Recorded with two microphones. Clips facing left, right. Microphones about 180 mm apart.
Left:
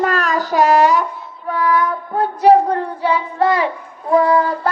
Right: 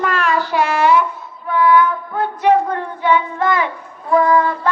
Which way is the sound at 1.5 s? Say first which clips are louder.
Right 3 dB; 40° left (ahead or behind).